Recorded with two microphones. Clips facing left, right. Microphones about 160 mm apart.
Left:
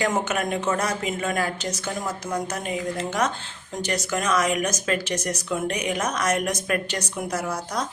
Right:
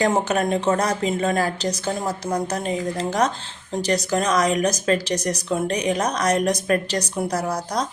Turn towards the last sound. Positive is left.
turn(degrees=-35)  # may be behind; listen again after turning